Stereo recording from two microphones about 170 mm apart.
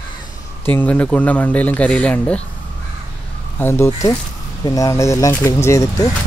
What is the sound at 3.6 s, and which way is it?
Speech, 15° left (ahead or behind).